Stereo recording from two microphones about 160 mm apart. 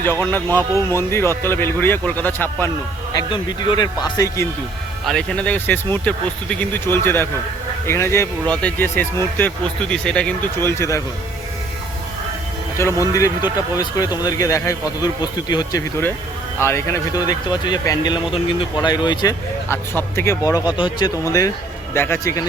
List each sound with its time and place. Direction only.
0.0 s speech: 15° left (ahead or behind)
3.2 s speech: 25° left (ahead or behind)
5.0 s speech: 5° left (ahead or behind)
12.7 s speech: 20° left (ahead or behind)